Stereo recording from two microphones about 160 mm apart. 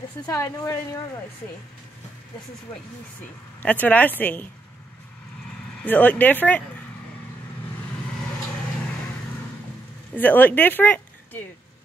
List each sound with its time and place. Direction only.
0.3 s a woman's voice: 20° left (ahead or behind)
3.6 s speech: 10° left (ahead or behind)
5.8 s speech: 10° left (ahead or behind)
10.1 s speech: 10° left (ahead or behind)